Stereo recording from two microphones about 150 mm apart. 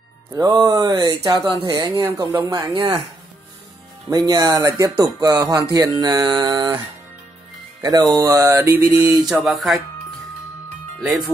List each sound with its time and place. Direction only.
0.3 s speech: 25° right (ahead or behind)
4.1 s speech: 25° right (ahead or behind)
7.8 s speech: 25° right (ahead or behind)
9.3 s speech: centre (ahead or behind)
11.0 s speech: centre (ahead or behind)